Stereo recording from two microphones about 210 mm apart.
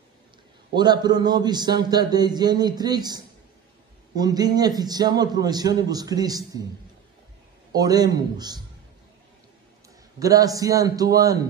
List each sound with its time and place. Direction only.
0.7 s a man's voice: 20° right (ahead or behind)
7.7 s a man's voice: 20° right (ahead or behind)
10.1 s a man's voice: 15° right (ahead or behind)